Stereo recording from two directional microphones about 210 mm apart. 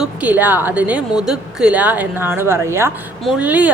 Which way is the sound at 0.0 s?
5° right (ahead or behind).